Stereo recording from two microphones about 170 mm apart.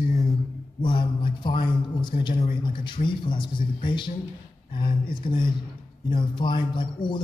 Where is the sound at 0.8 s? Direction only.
30° left (ahead or behind).